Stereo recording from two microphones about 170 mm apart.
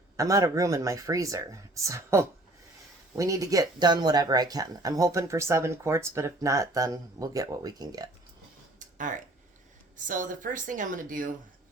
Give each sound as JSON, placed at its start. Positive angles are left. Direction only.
{"t": 0.2, "sound": "speech", "side_deg": -20}
{"t": 9.0, "sound": "speech", "side_deg": -50}